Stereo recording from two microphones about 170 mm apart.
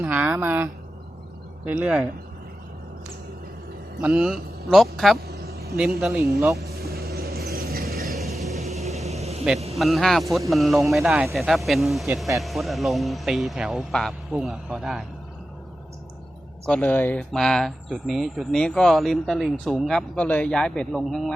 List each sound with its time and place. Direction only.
0.0 s speech: 5° right (ahead or behind)
4.0 s speech: 5° right (ahead or behind)
5.3 s vehicle: 65° right (ahead or behind)
6.7 s a sound: 65° right (ahead or behind)
8.4 s vehicle: centre (ahead or behind)
8.9 s vehicle: 40° right (ahead or behind)
9.7 s speech: centre (ahead or behind)
16.6 s speech: 10° left (ahead or behind)